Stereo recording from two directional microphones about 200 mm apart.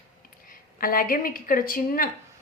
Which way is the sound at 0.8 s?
45° left (ahead or behind).